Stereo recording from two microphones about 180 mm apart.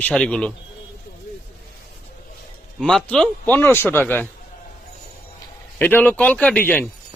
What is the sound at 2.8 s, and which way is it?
Speech, 5° left (ahead or behind).